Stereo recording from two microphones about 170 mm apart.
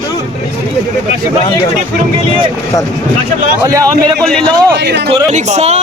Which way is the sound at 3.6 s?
20° right (ahead or behind).